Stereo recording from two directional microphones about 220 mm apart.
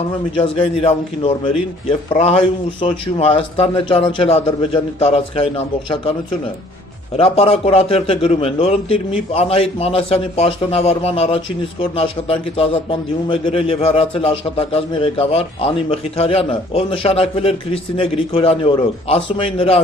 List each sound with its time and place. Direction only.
0.4 s a man's voice: 25° left (ahead or behind)
7.2 s a man's voice: 25° left (ahead or behind)